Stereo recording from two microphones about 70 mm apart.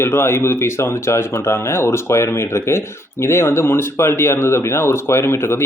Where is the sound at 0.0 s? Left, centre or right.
Left.